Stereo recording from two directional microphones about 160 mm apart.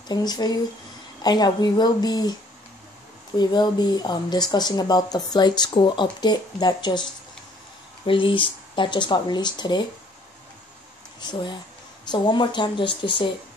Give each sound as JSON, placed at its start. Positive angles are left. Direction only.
{"t": 0.1, "sound": "speech", "side_deg": 25}
{"t": 3.3, "sound": "speech", "side_deg": 25}
{"t": 8.1, "sound": "speech", "side_deg": 30}
{"t": 11.1, "sound": "speech", "side_deg": 30}